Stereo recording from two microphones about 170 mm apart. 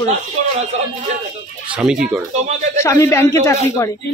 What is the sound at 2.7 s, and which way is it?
Speech, 15° left (ahead or behind).